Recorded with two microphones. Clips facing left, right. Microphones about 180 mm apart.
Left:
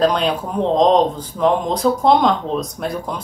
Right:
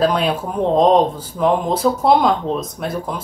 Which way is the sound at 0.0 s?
5° right (ahead or behind).